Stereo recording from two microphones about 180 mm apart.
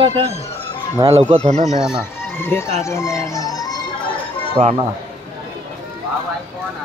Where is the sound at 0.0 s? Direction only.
30° right (ahead or behind).